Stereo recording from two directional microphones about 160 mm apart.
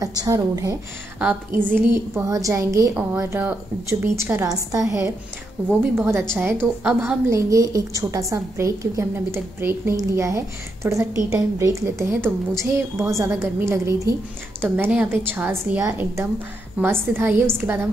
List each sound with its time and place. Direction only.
0.0 s a woman's voice: 20° right (ahead or behind)
1.2 s a woman's voice: 10° right (ahead or behind)